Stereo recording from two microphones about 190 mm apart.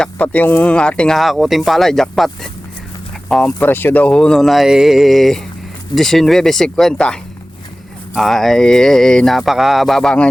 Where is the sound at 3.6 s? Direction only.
10° left (ahead or behind).